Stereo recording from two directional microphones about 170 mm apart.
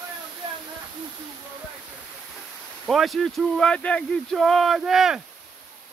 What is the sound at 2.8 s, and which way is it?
Speech, centre (ahead or behind).